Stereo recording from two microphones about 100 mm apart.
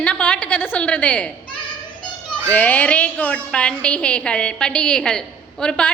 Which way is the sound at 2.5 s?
15° left (ahead or behind).